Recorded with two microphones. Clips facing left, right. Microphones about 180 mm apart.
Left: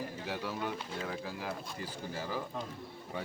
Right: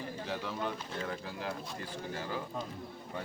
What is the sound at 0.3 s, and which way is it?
Speech, 10° left (ahead or behind).